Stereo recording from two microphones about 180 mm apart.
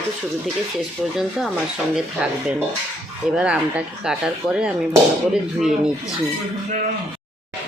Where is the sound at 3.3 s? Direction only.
5° right (ahead or behind).